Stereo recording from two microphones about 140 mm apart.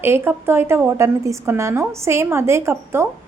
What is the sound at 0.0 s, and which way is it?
A woman's voice, 15° right (ahead or behind).